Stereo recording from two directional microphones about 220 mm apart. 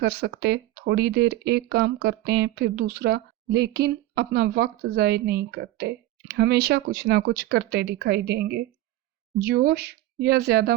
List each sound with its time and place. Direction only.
0.0 s speech: 50° right (ahead or behind)